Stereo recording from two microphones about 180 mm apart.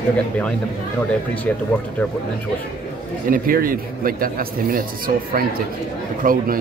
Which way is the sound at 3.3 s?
50° right (ahead or behind).